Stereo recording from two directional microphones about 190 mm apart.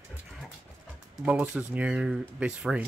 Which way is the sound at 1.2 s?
5° right (ahead or behind).